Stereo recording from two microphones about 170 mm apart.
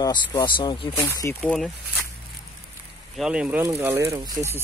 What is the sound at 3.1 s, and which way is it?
Speech, 5° right (ahead or behind).